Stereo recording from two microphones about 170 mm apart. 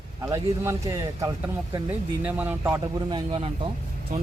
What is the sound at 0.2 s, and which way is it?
A man's voice, 15° right (ahead or behind).